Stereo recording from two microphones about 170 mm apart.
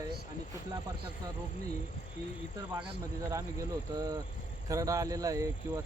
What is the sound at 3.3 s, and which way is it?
Speech, 20° right (ahead or behind).